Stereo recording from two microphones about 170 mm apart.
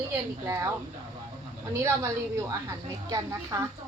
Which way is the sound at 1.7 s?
15° right (ahead or behind).